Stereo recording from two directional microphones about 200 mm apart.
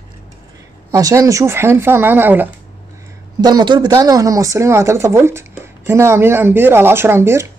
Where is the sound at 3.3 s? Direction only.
20° right (ahead or behind).